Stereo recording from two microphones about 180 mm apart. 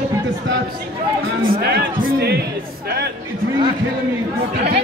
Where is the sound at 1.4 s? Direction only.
60° right (ahead or behind).